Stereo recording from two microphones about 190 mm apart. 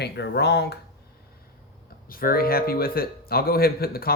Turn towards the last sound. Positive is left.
turn(degrees=50)  # may be behind; listen again after turning